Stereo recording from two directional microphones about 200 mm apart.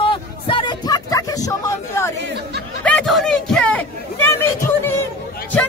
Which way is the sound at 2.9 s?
Centre (ahead or behind).